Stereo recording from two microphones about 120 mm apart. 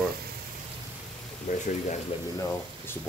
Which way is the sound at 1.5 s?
90° left.